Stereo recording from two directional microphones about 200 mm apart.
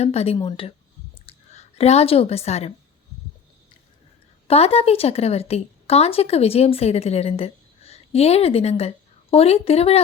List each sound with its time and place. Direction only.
0.0 s a woman's voice: 30° left (ahead or behind)
4.4 s a woman's voice: 30° left (ahead or behind)